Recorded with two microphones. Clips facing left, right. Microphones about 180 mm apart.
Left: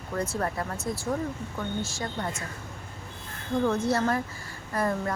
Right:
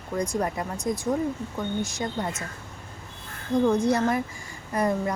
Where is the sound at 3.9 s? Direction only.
15° right (ahead or behind).